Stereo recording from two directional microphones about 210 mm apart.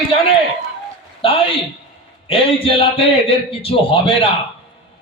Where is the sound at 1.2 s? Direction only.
25° left (ahead or behind).